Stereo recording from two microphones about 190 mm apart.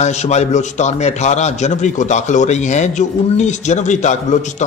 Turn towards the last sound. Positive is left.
turn(degrees=40)  # may be behind; listen again after turning